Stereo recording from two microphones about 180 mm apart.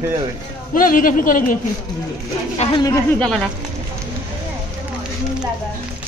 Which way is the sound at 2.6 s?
25° left (ahead or behind).